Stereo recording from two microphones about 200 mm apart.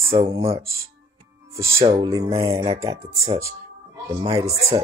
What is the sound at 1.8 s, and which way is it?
Speech, 30° right (ahead or behind).